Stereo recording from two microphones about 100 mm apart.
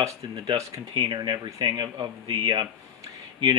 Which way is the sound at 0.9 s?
50° right (ahead or behind).